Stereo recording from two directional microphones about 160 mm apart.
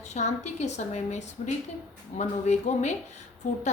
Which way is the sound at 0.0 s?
45° left (ahead or behind).